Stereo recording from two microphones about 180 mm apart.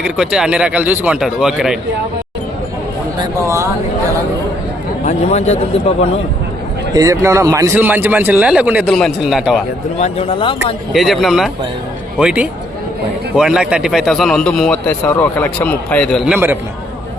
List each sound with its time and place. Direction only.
0.0 s a man's voice: 5° right (ahead or behind)
3.2 s speech: 15° right (ahead or behind)
5.0 s a man's voice: 35° left (ahead or behind)
6.9 s speech: 20° right (ahead or behind); by 9.6 s centre (ahead or behind)
10.0 s speech: 30° left (ahead or behind)
10.9 s a man's voice: centre (ahead or behind)
14.8 s a man's voice: 15° left (ahead or behind); by 16.6 s 10° right (ahead or behind)